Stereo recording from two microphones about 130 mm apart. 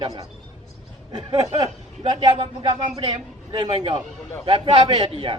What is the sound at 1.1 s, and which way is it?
A woman's voice, 35° right (ahead or behind).